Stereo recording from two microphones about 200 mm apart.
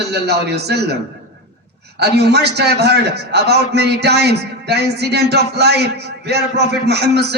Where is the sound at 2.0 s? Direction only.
55° right (ahead or behind).